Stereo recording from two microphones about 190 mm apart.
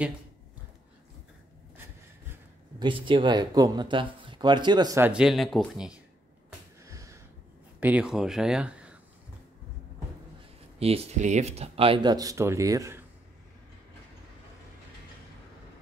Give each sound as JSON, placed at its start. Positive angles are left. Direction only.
{"t": 2.8, "sound": "speech", "side_deg": -25}
{"t": 6.8, "sound": "sniff", "side_deg": -15}
{"t": 7.8, "sound": "speech", "side_deg": -5}
{"t": 10.8, "sound": "speech", "side_deg": -30}